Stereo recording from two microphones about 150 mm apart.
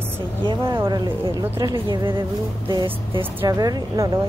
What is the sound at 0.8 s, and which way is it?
Speech, 30° right (ahead or behind).